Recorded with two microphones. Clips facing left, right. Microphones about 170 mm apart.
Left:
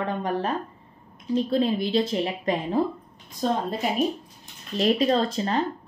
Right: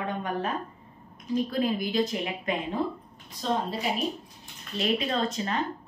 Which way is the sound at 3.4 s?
45° left (ahead or behind).